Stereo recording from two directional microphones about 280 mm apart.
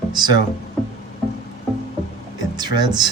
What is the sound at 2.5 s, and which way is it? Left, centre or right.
Speech, centre.